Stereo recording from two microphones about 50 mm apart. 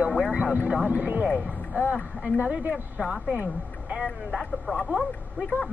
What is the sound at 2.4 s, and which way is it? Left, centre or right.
Speech, right.